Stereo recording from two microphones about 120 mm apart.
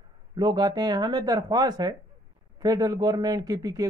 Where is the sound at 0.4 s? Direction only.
35° right (ahead or behind).